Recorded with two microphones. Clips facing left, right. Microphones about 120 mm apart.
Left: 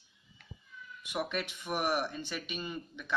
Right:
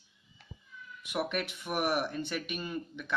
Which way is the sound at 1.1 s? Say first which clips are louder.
Right 2 dB; 10° right (ahead or behind).